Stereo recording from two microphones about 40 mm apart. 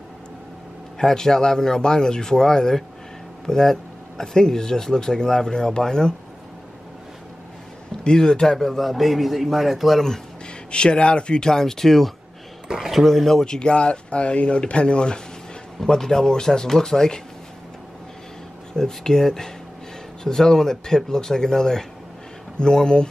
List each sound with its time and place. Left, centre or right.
0.9 s speech: centre
8.0 s speech: left
8.5 s a man's voice: centre
10.7 s speech: left; by 12.1 s centre
12.6 s speech: centre
13.6 s speech: left
15.8 s speech: centre
18.7 s speech: centre